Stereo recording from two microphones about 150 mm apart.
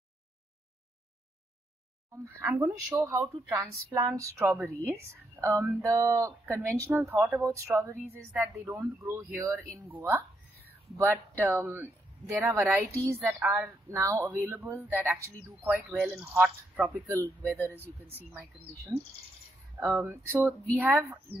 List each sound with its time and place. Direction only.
2.2 s speech: 15° right (ahead or behind)
19.8 s speech: 20° right (ahead or behind)